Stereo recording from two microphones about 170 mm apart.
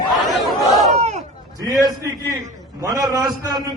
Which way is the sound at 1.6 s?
20° right (ahead or behind).